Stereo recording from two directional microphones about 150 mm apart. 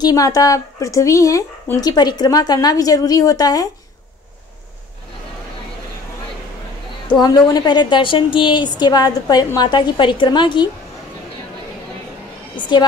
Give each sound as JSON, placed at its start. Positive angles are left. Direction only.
{"t": 0.0, "sound": "a woman's voice", "side_deg": 25}
{"t": 7.1, "sound": "a woman's voice", "side_deg": 25}
{"t": 12.5, "sound": "speech", "side_deg": 30}